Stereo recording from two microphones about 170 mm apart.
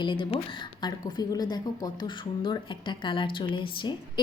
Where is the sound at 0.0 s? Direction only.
30° left (ahead or behind).